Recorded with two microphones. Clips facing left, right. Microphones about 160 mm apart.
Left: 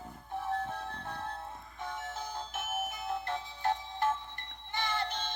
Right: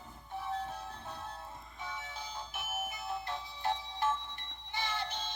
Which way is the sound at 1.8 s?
50° left (ahead or behind).